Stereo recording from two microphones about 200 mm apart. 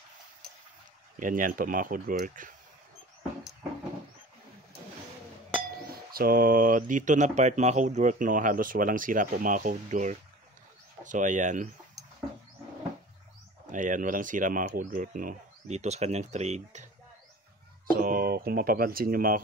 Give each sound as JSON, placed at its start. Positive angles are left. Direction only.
{"t": 1.2, "sound": "speech", "side_deg": -40}
{"t": 5.8, "sound": "speech", "side_deg": -50}
{"t": 13.7, "sound": "speech", "side_deg": -40}
{"t": 17.9, "sound": "speech", "side_deg": -45}